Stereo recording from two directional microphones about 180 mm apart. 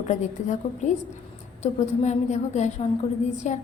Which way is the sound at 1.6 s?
40° left (ahead or behind).